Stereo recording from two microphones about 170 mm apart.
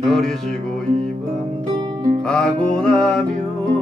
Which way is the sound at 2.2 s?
5° left (ahead or behind).